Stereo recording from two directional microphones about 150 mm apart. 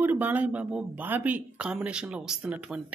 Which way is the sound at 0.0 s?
10° right (ahead or behind).